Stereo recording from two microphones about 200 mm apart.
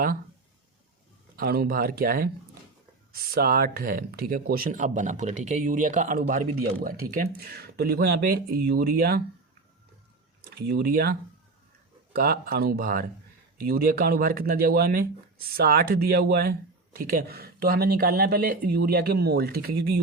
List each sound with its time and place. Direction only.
1.4 s speech: 50° right (ahead or behind)
3.3 s speech: 50° right (ahead or behind)
10.7 s speech: 50° right (ahead or behind)